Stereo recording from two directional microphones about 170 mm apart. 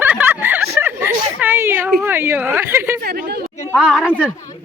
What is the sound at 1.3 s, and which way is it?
A woman's voice, 10° right (ahead or behind).